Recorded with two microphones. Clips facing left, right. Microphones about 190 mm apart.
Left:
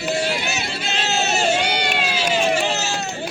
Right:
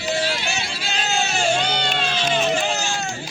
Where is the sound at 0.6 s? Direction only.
Centre (ahead or behind).